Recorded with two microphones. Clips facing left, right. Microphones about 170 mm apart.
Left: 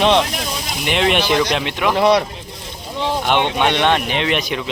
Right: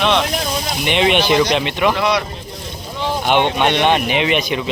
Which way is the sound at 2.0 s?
30° left (ahead or behind).